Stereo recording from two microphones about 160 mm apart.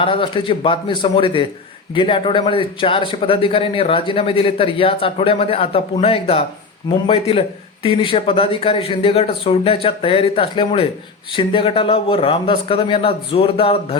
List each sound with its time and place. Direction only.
0.0 s a man's voice: 35° left (ahead or behind)